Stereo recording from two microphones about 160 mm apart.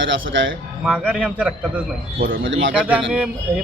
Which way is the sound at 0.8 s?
5° right (ahead or behind).